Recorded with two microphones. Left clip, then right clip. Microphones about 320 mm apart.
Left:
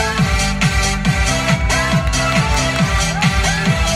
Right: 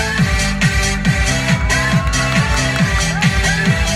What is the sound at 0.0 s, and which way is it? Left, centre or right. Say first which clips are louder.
Music: even; centre.